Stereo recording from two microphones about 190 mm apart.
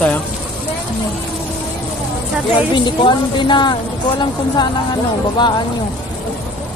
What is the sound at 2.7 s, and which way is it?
A woman's voice, 25° left (ahead or behind).